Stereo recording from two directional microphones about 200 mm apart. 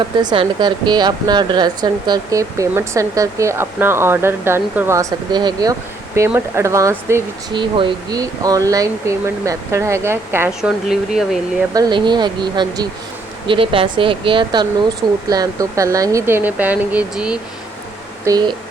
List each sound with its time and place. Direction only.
0.0 s speech: 20° right (ahead or behind); by 11.3 s centre (ahead or behind)
11.7 s speech: 20° right (ahead or behind)
18.3 s speech: 20° right (ahead or behind)